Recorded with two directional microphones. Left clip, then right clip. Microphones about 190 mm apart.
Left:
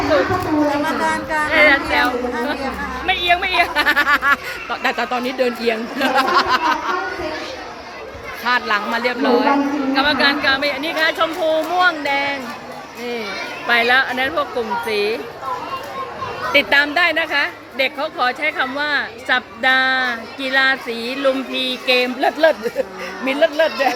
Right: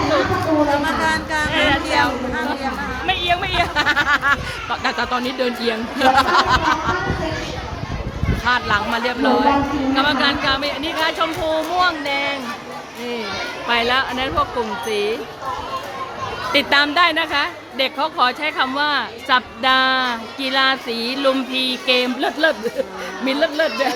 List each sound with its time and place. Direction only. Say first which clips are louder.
0.9 s speech: even; 5° right (ahead or behind)
8.4 s speech: even; 10° right (ahead or behind)
13.7 s speech: left 4 dB; 10° right (ahead or behind)
16.5 s a woman's voice: left 2 dB; 25° right (ahead or behind)